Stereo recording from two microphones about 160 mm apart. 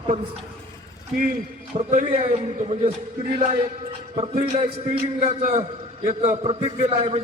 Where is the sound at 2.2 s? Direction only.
40° right (ahead or behind).